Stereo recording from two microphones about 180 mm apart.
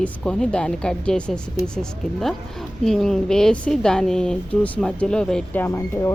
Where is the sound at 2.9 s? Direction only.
Centre (ahead or behind).